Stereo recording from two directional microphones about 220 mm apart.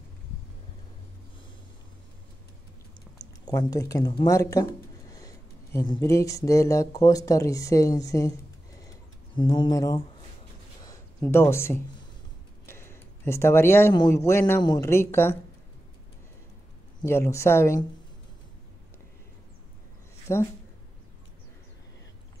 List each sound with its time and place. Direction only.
3.4 s speech: 15° left (ahead or behind)
8.8 s a sound: 20° left (ahead or behind)
11.1 s speech: 10° left (ahead or behind)
17.0 s speech: 10° left (ahead or behind)
20.3 s speech: 10° left (ahead or behind)